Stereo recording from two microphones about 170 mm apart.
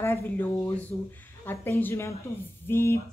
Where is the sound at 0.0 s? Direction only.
15° left (ahead or behind).